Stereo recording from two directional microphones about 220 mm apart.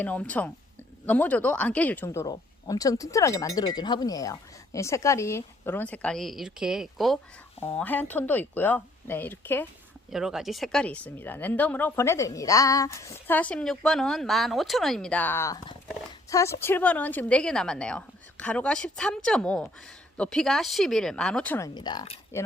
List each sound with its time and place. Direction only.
0.0 s speech: 5° left (ahead or behind)
10.1 s a woman's voice: centre (ahead or behind)
21.8 s speech: 20° left (ahead or behind)